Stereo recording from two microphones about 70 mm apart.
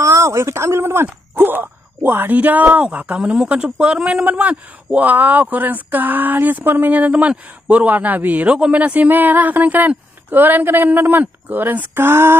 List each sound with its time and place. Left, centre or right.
0.0 s speech: right
1.3 s wail: right
2.0 s a man's voice: right